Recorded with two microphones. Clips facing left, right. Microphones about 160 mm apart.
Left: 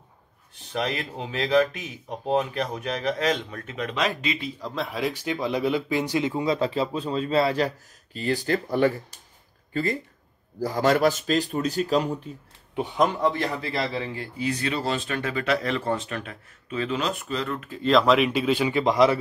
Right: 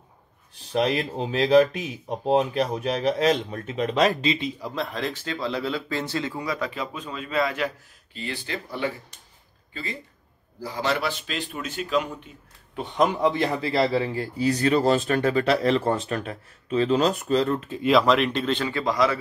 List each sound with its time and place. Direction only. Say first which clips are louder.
0.9 s speech: right 5 dB; 35° right (ahead or behind)
4.4 s speech: right 3 dB; 10° right (ahead or behind)
4.7 s speech: left 4 dB; 5° left (ahead or behind); by 8.9 s 45° left (ahead or behind)
10.6 s speech: left 6 dB; 45° left (ahead or behind)
12.8 s speech: left 4 dB; 20° left (ahead or behind)
13.1 s a man's voice: right 2 dB; 15° right (ahead or behind); by 17.6 s 35° right (ahead or behind)
17.8 s speech: even; centre (ahead or behind); by 19.1 s 20° left (ahead or behind)